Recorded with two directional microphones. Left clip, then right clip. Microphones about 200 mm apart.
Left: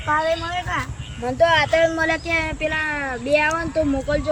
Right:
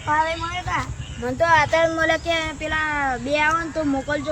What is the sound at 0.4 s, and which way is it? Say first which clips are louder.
Speech: left 1 dB; 15° right (ahead or behind).